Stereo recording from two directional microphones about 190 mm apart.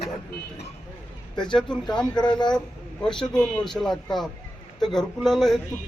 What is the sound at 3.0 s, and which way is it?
Speech, 5° left (ahead or behind).